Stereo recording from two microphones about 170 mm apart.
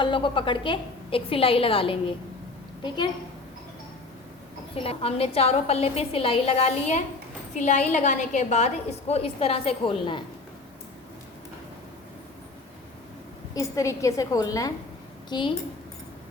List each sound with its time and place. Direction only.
0.0 s a woman's voice: 30° left (ahead or behind)
4.7 s a woman's voice: 35° left (ahead or behind)
13.5 s a woman's voice: 20° left (ahead or behind)